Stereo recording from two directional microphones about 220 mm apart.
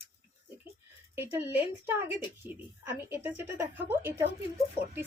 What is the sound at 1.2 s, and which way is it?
Speech, 10° right (ahead or behind).